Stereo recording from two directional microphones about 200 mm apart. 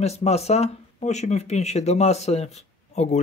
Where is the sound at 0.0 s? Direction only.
30° left (ahead or behind).